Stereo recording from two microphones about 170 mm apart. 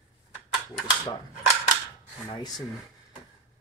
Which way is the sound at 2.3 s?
25° left (ahead or behind).